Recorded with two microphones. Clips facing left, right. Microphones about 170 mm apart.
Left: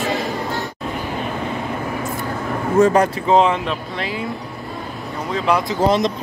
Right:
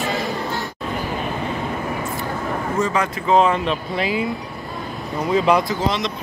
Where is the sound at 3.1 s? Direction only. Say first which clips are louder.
Left 1 dB; 30° left (ahead or behind).